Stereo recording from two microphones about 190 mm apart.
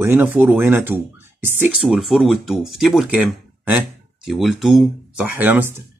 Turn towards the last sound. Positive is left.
turn(degrees=-10)  # may be behind; listen again after turning